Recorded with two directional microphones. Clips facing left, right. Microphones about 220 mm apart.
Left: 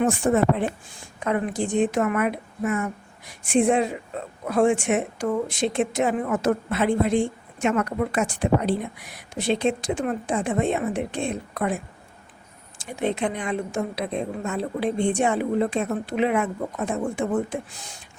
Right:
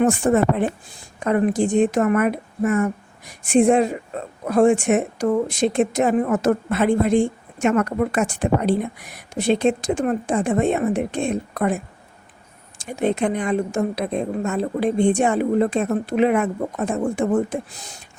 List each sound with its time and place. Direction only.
0.0 s a woman's voice: 50° right (ahead or behind)
13.0 s a woman's voice: 45° right (ahead or behind)